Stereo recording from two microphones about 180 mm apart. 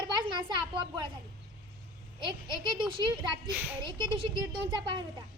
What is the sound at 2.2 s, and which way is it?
A child's voice, 25° right (ahead or behind).